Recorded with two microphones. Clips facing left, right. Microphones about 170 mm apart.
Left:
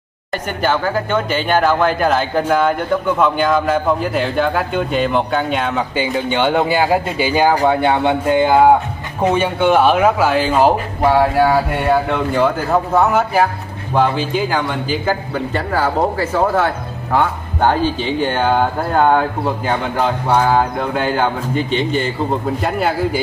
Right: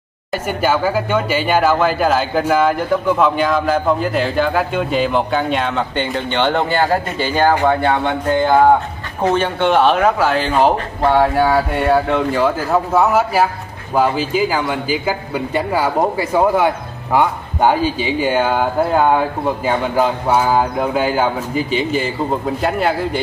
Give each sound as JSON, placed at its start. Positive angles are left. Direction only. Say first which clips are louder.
{"t": 0.3, "sound": "a man's voice", "louder": "right 1 dB", "side_deg": -5}